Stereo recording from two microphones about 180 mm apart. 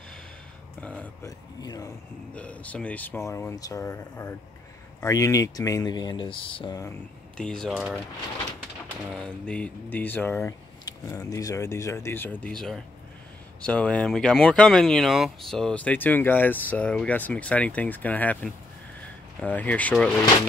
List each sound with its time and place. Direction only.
0.7 s a sound: 5° left (ahead or behind)
1.2 s speech: 20° left (ahead or behind)
2.3 s speech: 5° left (ahead or behind); by 6.9 s 25° left (ahead or behind)
7.3 s speech: 5° left (ahead or behind)
9.1 s speech: 5° left (ahead or behind)